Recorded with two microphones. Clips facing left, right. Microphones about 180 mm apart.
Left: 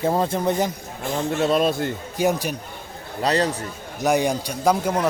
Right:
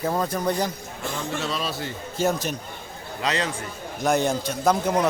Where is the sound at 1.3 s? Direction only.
55° left (ahead or behind).